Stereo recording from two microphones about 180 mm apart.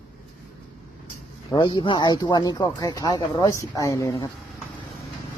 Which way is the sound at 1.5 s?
25° left (ahead or behind).